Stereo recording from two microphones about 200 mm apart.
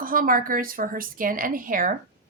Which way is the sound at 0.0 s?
45° right (ahead or behind).